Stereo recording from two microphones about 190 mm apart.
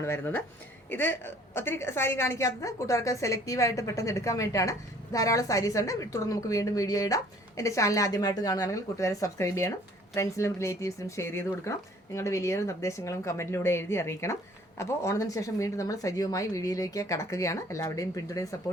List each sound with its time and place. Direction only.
0.0 s a woman's voice: 10° left (ahead or behind)